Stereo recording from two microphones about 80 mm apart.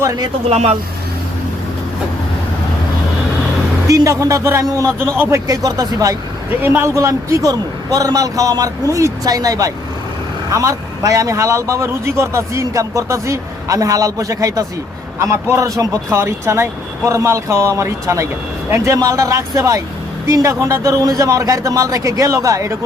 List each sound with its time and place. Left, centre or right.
3.8 s a man's voice: right
4.9 s speech: right
5.5 s a man's voice: right
6.6 s a man's voice: right
16.1 s a man's voice: right